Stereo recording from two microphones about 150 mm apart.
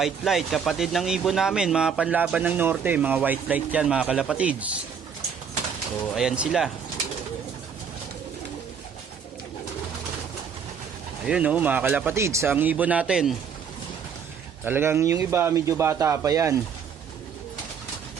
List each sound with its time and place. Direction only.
0.0 s speech: centre (ahead or behind)
6.1 s speech: 5° right (ahead or behind)
11.3 s speech: 10° right (ahead or behind)
14.6 s speech: 15° right (ahead or behind)